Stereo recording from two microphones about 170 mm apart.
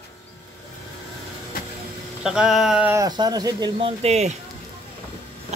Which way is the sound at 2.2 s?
5° right (ahead or behind).